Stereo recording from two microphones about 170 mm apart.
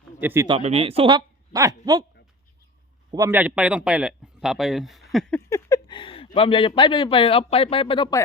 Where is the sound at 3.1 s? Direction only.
15° right (ahead or behind); by 5.4 s 5° left (ahead or behind).